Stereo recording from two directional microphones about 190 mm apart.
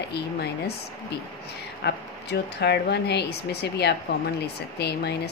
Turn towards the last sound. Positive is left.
turn(degrees=60)  # may be behind; listen again after turning